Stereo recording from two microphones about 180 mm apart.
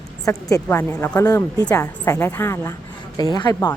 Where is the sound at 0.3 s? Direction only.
20° left (ahead or behind).